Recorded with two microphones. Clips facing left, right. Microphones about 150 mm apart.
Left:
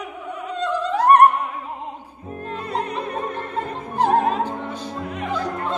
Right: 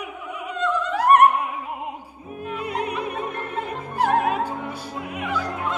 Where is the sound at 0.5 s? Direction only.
35° left (ahead or behind).